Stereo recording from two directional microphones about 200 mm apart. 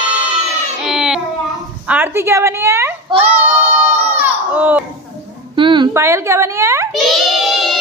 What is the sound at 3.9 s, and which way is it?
Baby cry, 10° right (ahead or behind).